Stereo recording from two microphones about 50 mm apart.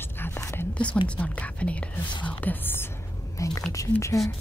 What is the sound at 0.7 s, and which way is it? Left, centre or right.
Speech, left.